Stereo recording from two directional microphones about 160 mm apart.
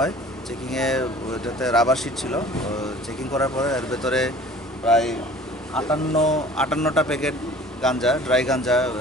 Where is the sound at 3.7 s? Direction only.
5° left (ahead or behind).